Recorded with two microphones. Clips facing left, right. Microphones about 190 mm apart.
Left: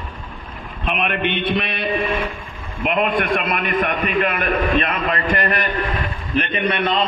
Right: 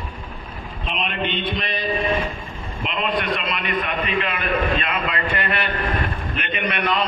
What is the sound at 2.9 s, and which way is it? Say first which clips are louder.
A man's voice: left 5 dB; 55° left (ahead or behind).